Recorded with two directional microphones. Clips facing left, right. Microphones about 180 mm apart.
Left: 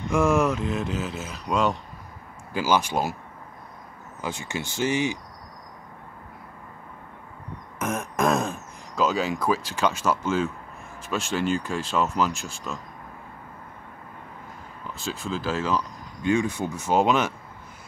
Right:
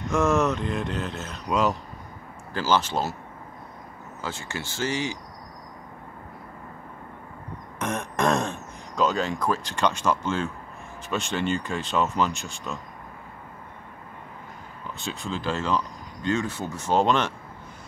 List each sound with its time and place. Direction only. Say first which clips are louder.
0.1 s speech: left 1 dB; 10° left (ahead or behind)
2.5 s speech: left 1 dB; 15° left (ahead or behind)
4.2 s speech: left 3 dB; 15° left (ahead or behind)
7.8 s speech: left 1 dB; 5° left (ahead or behind)
15.0 s speech: left 2 dB; centre (ahead or behind)